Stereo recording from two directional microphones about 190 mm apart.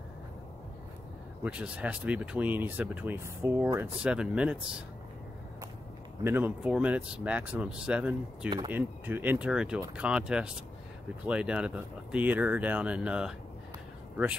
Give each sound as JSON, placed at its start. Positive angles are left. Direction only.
{"t": 1.4, "sound": "speech", "side_deg": -5}
{"t": 6.2, "sound": "speech", "side_deg": -10}
{"t": 8.5, "sound": "speech", "side_deg": -25}
{"t": 8.7, "sound": "speech", "side_deg": -10}